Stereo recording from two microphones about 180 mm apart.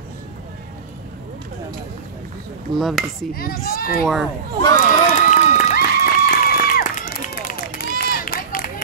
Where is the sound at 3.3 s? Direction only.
55° left (ahead or behind).